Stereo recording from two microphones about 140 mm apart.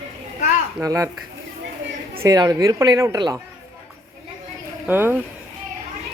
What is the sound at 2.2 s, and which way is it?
Speech, 25° right (ahead or behind).